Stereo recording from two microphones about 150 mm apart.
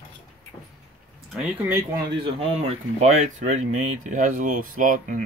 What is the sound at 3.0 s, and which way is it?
Speech, 50° right (ahead or behind).